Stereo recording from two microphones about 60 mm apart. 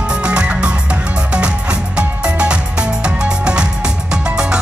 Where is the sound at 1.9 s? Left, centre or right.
Centre.